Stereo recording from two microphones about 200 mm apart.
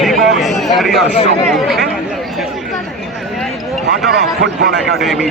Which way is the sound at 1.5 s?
Centre (ahead or behind).